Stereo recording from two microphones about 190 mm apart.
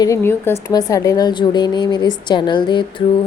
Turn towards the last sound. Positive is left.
turn(degrees=25)  # may be behind; listen again after turning